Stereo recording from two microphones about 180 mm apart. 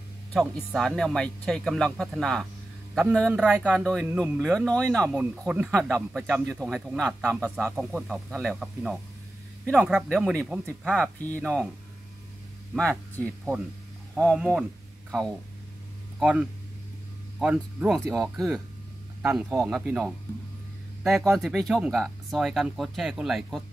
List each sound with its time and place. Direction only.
0.3 s speech: centre (ahead or behind)
5.1 s speech: 5° right (ahead or behind)
14.2 s speech: centre (ahead or behind)
19.2 s speech: 5° right (ahead or behind)